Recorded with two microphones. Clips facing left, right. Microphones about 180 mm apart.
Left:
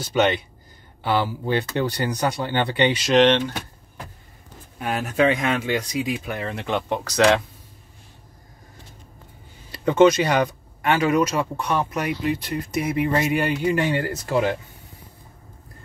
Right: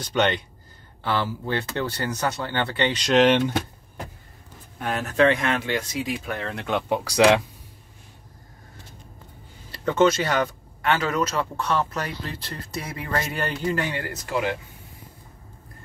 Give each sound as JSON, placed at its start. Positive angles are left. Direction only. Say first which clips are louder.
{"t": 0.0, "sound": "speech", "louder": "left 3 dB", "side_deg": 5}
{"t": 1.0, "sound": "speech", "louder": "left 3 dB", "side_deg": 15}
{"t": 3.0, "sound": "speech", "louder": "right 1 dB", "side_deg": 0}
{"t": 4.7, "sound": "speech", "louder": "even", "side_deg": 10}
{"t": 6.9, "sound": "speech", "louder": "right 1 dB", "side_deg": -10}
{"t": 9.7, "sound": "speech", "louder": "left 4 dB", "side_deg": 15}
{"t": 13.8, "sound": "speech", "louder": "left 6 dB", "side_deg": 30}